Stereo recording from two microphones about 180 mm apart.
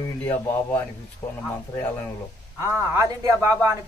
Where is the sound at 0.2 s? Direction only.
10° left (ahead or behind).